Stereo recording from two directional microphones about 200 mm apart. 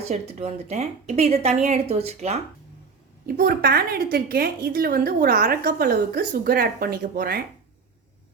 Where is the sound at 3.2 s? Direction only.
50° right (ahead or behind).